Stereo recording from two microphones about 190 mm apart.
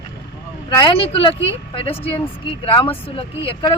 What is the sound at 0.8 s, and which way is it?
Speech, 25° left (ahead or behind).